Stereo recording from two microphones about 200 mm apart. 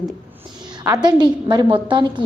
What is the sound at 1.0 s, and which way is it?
A woman's voice, 20° right (ahead or behind).